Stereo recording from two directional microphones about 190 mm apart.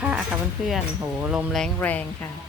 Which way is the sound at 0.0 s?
5° right (ahead or behind).